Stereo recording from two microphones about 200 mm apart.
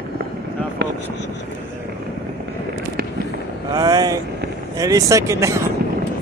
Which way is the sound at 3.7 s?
20° right (ahead or behind).